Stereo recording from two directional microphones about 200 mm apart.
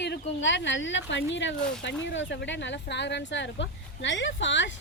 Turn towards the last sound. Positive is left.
turn(degrees=65)  # may be behind; listen again after turning